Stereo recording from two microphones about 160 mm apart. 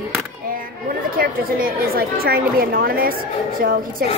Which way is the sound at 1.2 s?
65° right (ahead or behind).